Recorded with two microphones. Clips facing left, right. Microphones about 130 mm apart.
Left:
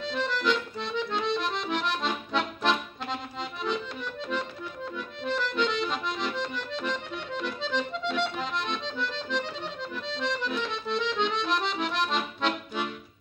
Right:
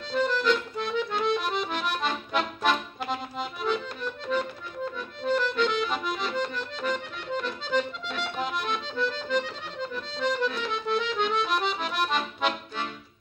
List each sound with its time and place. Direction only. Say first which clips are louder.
0.1 s accordion: right 4 dB; centre (ahead or behind)